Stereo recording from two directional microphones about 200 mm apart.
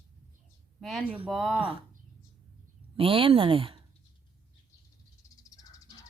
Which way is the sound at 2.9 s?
25° right (ahead or behind).